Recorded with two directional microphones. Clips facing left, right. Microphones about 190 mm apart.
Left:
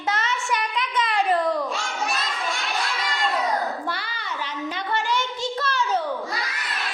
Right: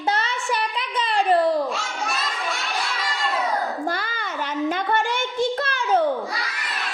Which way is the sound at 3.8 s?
45° right (ahead or behind).